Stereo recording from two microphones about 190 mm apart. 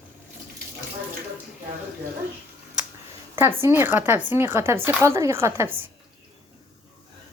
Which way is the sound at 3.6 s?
10° right (ahead or behind).